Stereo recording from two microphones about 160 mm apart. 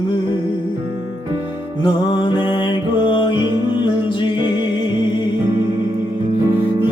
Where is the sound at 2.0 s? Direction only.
30° left (ahead or behind).